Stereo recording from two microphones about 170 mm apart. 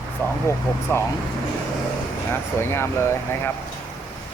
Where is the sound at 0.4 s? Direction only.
15° left (ahead or behind).